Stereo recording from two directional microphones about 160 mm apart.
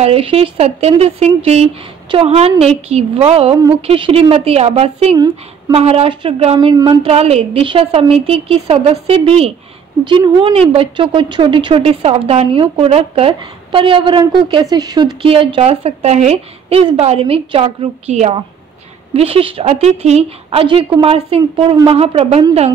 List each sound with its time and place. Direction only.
0.0 s speech: 35° right (ahead or behind)
5.1 s a woman's voice: 25° right (ahead or behind)
5.8 s a woman's voice: 40° right (ahead or behind)
7.1 s speech: 40° right (ahead or behind)
15.2 s speech: 35° right (ahead or behind)